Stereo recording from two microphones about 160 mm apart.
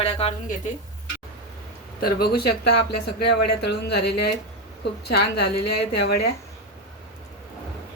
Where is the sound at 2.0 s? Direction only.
70° left (ahead or behind); by 6.3 s 90° left.